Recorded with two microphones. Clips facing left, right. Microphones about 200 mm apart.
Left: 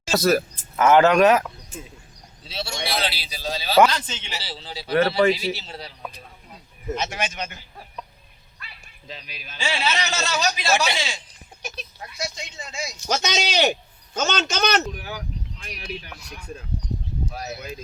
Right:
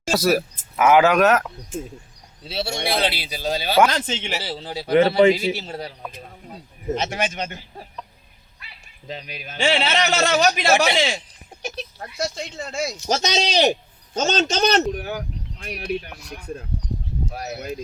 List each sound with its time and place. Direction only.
0.1 s speech: 10° right (ahead or behind)
2.5 s a man's voice: 55° right (ahead or behind)
4.9 s speech: 20° right (ahead or behind)
5.5 s a man's voice: 50° right (ahead or behind)
9.0 s a man's voice: 45° right (ahead or behind)
13.1 s a man's voice: 35° right (ahead or behind)
14.9 s a man's voice: 50° right (ahead or behind)